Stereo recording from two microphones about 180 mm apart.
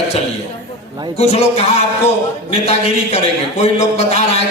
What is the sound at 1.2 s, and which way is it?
A man's voice, 35° left (ahead or behind).